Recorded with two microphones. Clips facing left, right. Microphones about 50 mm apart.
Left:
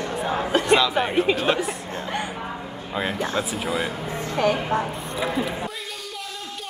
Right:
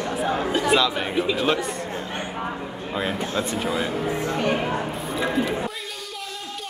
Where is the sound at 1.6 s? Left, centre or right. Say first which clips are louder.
Even; left.